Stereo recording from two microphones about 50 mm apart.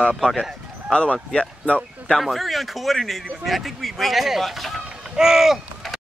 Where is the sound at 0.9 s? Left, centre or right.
Left.